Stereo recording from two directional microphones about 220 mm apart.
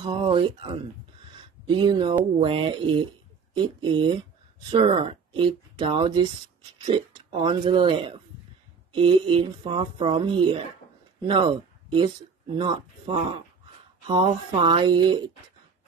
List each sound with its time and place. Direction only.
0.0 s speech: 25° right (ahead or behind)